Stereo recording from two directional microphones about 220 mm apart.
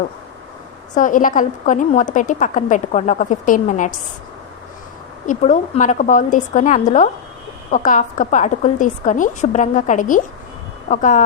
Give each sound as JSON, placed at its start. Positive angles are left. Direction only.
{"t": 0.9, "sound": "a woman's voice", "side_deg": 35}
{"t": 5.2, "sound": "a woman's voice", "side_deg": 35}